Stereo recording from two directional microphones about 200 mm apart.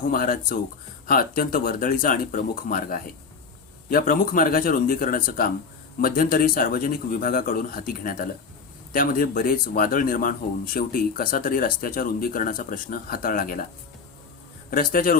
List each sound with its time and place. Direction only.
0.1 s speech: 45° left (ahead or behind)
14.7 s speech: 45° left (ahead or behind)